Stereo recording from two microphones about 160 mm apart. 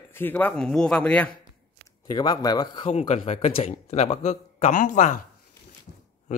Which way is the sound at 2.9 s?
50° left (ahead or behind).